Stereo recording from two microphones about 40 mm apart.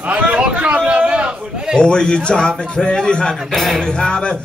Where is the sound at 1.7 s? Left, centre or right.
Left.